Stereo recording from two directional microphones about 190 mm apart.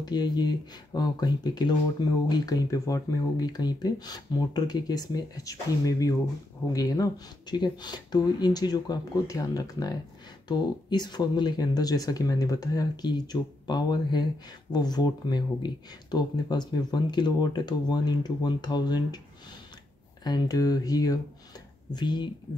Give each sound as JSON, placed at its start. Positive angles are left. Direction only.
{"t": 0.0, "sound": "speech", "side_deg": 20}
{"t": 20.2, "sound": "speech", "side_deg": 20}